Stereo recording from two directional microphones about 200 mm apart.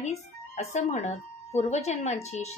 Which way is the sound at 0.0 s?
35° left (ahead or behind).